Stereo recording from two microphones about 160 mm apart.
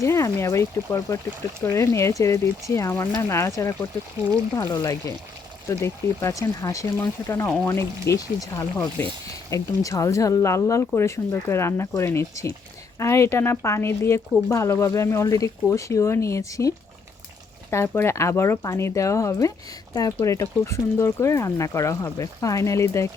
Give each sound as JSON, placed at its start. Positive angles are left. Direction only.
{"t": 0.0, "sound": "speech", "side_deg": 15}